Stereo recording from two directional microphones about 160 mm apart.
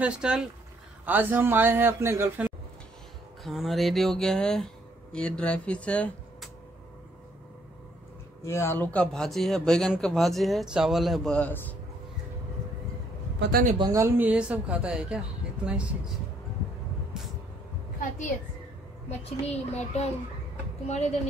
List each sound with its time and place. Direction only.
0.0 s speech: 5° right (ahead or behind)
3.4 s speech: centre (ahead or behind)
8.5 s speech: 15° left (ahead or behind)
13.4 s speech: 75° right (ahead or behind)
13.9 s speech: 15° right (ahead or behind)
19.0 s a child's voice: 40° left (ahead or behind)